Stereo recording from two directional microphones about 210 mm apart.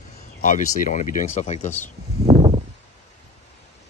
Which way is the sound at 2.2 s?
25° right (ahead or behind).